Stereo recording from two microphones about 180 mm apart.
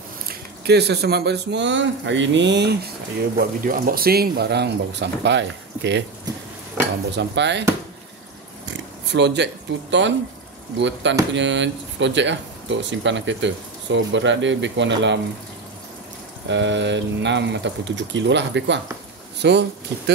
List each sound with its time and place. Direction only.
0.3 s speech: 65° right (ahead or behind)
3.3 s speech: 50° right (ahead or behind); by 6.0 s 75° right (ahead or behind)
7.2 s speech: 75° right (ahead or behind)
8.6 s speech: 75° right (ahead or behind)
16.4 s speech: 85° right